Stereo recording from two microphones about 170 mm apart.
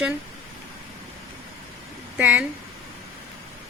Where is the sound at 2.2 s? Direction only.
5° right (ahead or behind).